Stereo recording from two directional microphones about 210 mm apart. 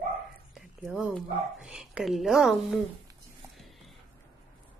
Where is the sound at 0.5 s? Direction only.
5° right (ahead or behind).